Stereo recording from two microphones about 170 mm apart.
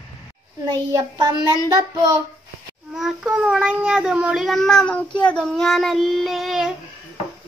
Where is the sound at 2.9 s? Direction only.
Centre (ahead or behind).